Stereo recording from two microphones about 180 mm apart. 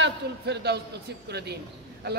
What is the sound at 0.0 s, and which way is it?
Speech, 70° right (ahead or behind).